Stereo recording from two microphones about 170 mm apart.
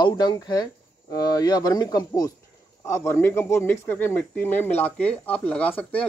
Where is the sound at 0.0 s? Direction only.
25° left (ahead or behind).